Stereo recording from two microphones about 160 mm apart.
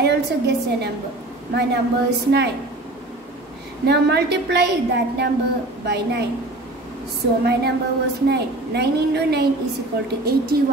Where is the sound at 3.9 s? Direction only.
90° right.